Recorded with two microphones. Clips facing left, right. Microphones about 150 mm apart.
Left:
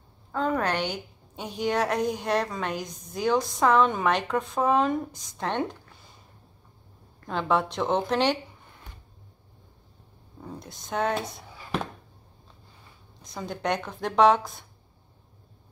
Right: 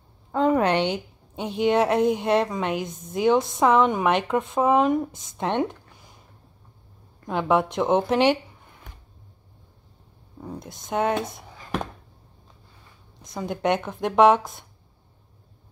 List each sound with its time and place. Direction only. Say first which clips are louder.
0.3 s a woman's voice: right 6 dB; 20° right (ahead or behind)
7.2 s a woman's voice: right 4 dB; 15° right (ahead or behind)
10.4 s a woman's voice: right 4 dB; 20° right (ahead or behind)
11.3 s a sound: right 1 dB; 15° right (ahead or behind)
13.2 s a woman's voice: right 5 dB; 20° right (ahead or behind)